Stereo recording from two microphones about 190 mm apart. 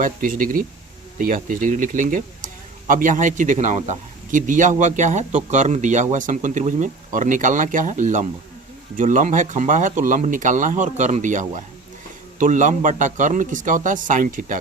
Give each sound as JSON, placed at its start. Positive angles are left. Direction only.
{"t": 0.0, "sound": "speech", "side_deg": -45}